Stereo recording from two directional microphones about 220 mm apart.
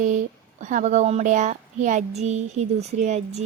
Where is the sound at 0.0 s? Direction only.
35° right (ahead or behind).